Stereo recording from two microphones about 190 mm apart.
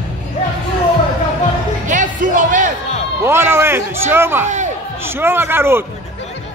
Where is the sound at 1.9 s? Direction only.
45° right (ahead or behind).